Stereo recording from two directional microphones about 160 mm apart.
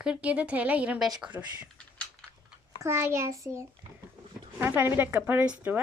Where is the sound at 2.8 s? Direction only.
15° right (ahead or behind).